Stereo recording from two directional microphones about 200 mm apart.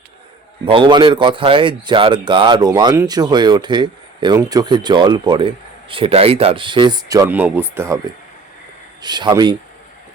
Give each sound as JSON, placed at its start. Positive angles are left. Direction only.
{"t": 0.6, "sound": "a man's voice", "side_deg": -25}
{"t": 9.0, "sound": "a man's voice", "side_deg": -20}